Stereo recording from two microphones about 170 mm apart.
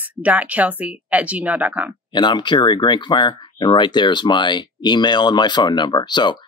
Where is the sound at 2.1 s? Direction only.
25° left (ahead or behind).